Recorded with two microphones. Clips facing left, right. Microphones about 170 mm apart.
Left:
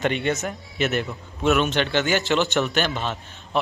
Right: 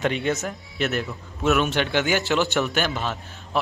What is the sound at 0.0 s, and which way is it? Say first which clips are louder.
A man's voice: even; centre (ahead or behind).